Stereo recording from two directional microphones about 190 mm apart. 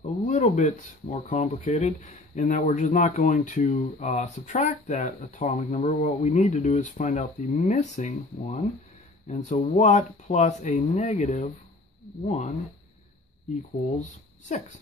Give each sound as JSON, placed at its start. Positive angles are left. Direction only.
{"t": 0.0, "sound": "speech", "side_deg": 40}